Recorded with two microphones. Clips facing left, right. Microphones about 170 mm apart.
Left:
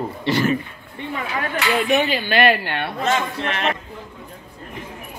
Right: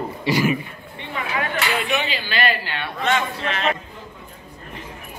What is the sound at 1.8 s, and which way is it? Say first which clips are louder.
A woman's voice: left 6 dB; 50° left (ahead or behind).